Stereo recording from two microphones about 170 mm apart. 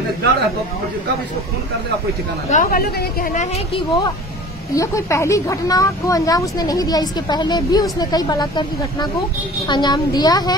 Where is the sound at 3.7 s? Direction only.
25° left (ahead or behind).